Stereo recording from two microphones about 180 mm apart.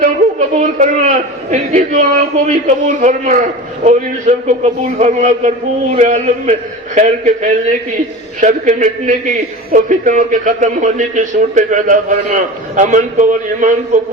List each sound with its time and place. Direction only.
0.0 s a man's voice: 45° right (ahead or behind)